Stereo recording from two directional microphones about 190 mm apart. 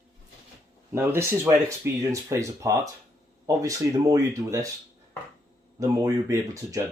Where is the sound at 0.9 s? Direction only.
15° right (ahead or behind).